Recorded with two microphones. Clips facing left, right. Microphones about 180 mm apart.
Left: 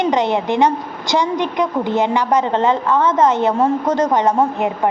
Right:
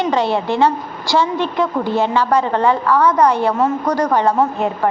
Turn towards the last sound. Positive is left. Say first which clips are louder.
# even
turn(degrees=15)  # may be behind; listen again after turning